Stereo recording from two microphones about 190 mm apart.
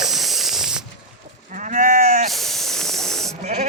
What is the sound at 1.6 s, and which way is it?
Sheep, 40° right (ahead or behind).